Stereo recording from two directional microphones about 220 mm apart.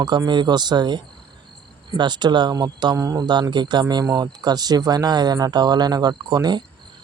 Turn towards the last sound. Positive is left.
turn(degrees=-20)  # may be behind; listen again after turning